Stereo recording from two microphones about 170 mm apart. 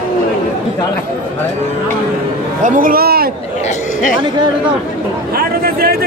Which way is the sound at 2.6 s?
55° right (ahead or behind).